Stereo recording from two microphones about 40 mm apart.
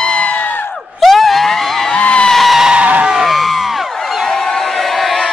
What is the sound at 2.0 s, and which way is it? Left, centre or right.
Music, left.